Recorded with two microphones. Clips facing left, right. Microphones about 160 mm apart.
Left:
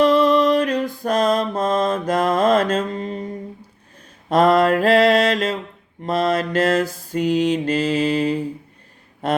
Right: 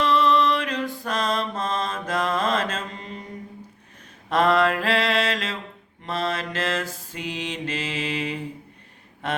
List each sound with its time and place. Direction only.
0.0 s mantra: 45° left (ahead or behind)
4.3 s mantra: 40° left (ahead or behind)